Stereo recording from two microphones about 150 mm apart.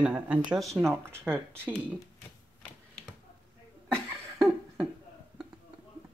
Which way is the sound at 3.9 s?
15° right (ahead or behind).